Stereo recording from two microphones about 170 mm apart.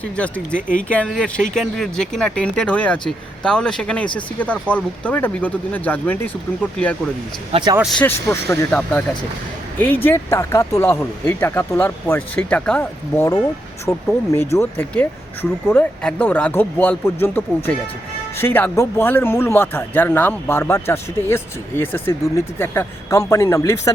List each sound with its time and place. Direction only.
0.2 s a man's voice: 5° left (ahead or behind)
7.5 s speech: 25° right (ahead or behind)
7.8 s speech: centre (ahead or behind)
8.0 s a man's voice: 15° left (ahead or behind)